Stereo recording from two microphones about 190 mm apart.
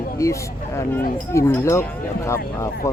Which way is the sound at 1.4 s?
15° left (ahead or behind).